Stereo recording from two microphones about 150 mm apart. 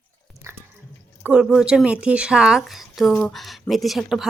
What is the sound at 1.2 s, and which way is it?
Speech, 5° right (ahead or behind).